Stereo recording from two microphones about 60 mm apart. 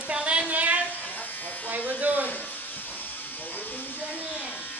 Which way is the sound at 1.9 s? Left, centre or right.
Right.